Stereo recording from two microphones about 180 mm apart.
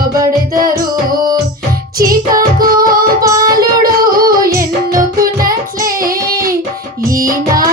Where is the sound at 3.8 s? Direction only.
55° right (ahead or behind).